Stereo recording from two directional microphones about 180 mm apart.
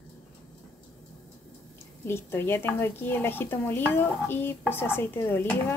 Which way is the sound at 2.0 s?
15° left (ahead or behind).